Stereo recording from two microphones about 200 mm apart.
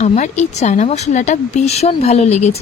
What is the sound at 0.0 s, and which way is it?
A woman's voice, 35° left (ahead or behind).